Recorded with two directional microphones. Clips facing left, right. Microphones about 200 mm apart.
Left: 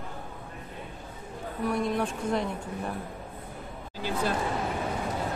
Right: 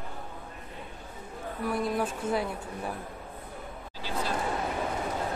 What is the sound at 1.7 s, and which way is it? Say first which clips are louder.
Speech: left 1 dB; 5° right (ahead or behind).